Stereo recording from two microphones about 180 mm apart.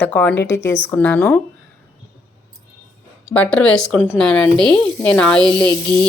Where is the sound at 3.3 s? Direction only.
5° left (ahead or behind).